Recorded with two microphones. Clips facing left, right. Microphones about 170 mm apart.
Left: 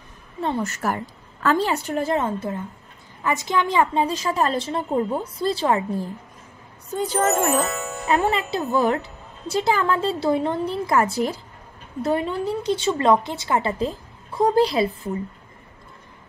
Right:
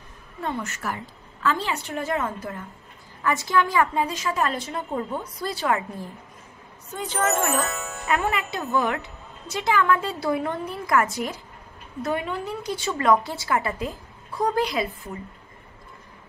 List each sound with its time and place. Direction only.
0.4 s a woman's voice: 30° left (ahead or behind)
7.2 s speech: centre (ahead or behind)
8.3 s a woman's voice: 35° left (ahead or behind)